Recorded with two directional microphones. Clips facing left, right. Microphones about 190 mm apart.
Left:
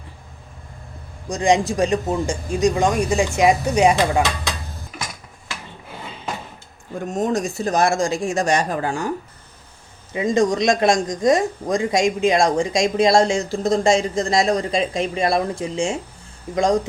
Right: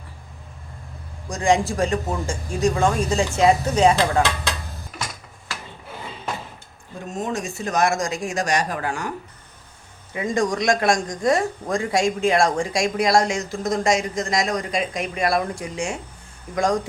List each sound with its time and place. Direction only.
1.3 s speech: 20° left (ahead or behind)
7.1 s speech: 40° left (ahead or behind); by 16.8 s 20° left (ahead or behind)